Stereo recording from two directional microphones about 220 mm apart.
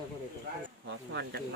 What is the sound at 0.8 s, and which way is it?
Speech, 50° right (ahead or behind).